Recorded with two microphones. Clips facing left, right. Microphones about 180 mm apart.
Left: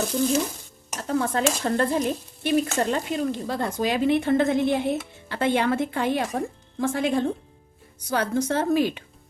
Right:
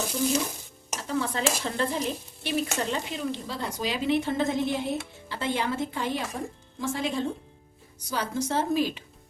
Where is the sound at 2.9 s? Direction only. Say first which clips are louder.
Left 5 dB; 50° left (ahead or behind).